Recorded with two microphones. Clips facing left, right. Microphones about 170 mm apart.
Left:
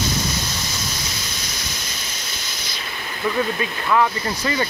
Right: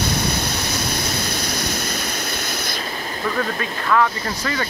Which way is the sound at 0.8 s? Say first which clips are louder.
Right 6 dB; 60° right (ahead or behind).